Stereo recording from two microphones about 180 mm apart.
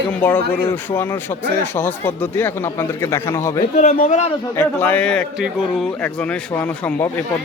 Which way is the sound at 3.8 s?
45° left (ahead or behind).